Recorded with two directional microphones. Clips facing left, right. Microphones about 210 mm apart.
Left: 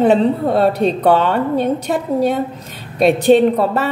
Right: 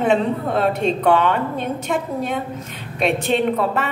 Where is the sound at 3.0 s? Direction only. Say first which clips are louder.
Left 8 dB; 40° left (ahead or behind).